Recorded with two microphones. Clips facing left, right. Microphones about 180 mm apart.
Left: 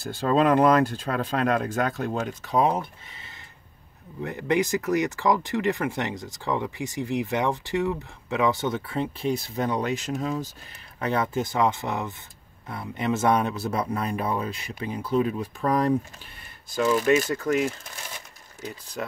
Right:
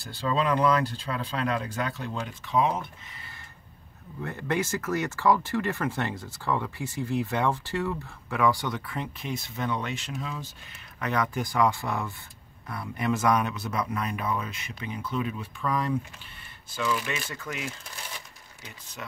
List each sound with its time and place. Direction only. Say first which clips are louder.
0.0 s speech: left 6 dB; 50° left (ahead or behind)
4.2 s speech: left 5 dB; 15° left (ahead or behind); by 10.5 s 40° left (ahead or behind)
11.0 s speech: left 3 dB; 30° left (ahead or behind)
19.0 s speech: left 8 dB; 40° left (ahead or behind)